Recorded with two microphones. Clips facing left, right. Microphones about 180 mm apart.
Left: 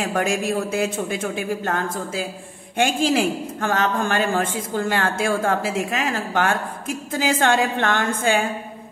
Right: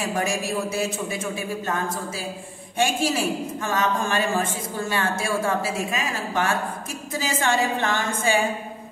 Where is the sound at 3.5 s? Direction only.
60° left (ahead or behind).